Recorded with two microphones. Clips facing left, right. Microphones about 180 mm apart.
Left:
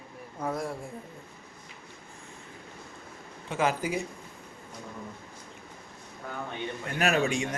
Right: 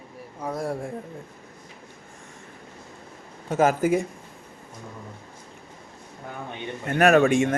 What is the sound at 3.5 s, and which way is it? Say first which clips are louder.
Speech: right 8 dB; 45° right (ahead or behind).